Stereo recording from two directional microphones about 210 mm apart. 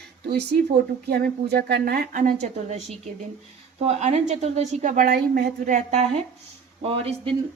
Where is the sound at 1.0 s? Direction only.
50° right (ahead or behind).